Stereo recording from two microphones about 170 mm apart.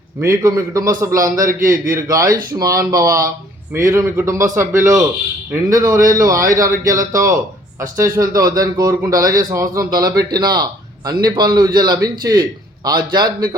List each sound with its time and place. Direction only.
0.2 s a man's voice: 20° right (ahead or behind)
1.4 s a man's voice: 55° right (ahead or behind)
1.9 s a man's voice: 20° right (ahead or behind)